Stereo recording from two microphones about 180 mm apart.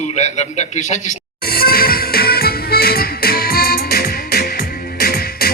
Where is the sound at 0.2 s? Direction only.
40° left (ahead or behind).